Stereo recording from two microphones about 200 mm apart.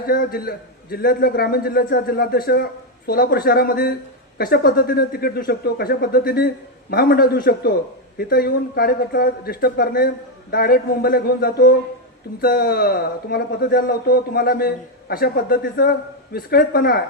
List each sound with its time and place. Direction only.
0.0 s speech: 45° left (ahead or behind)